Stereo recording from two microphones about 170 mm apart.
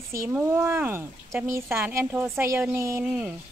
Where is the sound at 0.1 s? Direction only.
15° right (ahead or behind).